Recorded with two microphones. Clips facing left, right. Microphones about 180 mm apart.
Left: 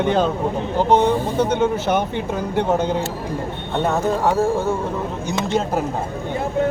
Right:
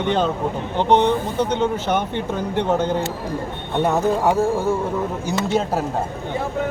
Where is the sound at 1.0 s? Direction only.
50° left (ahead or behind).